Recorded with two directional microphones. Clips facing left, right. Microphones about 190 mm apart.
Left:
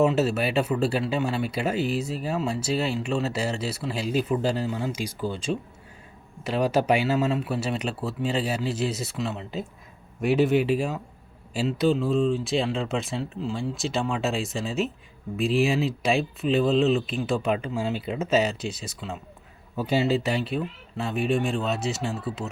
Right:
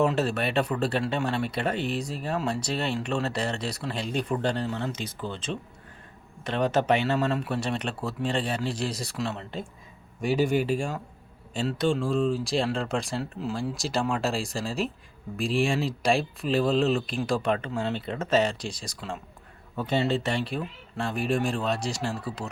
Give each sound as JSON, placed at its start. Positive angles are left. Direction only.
{"t": 0.0, "sound": "speech", "side_deg": 5}